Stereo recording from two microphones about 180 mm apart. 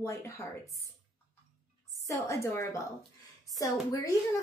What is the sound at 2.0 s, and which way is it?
A woman's voice, 15° left (ahead or behind).